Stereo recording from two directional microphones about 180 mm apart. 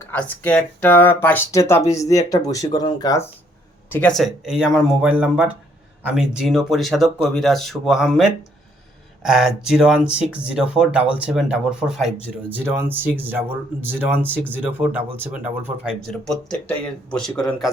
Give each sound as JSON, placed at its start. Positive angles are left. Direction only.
{"t": 0.0, "sound": "speech", "side_deg": 10}
{"t": 3.8, "sound": "speech", "side_deg": 10}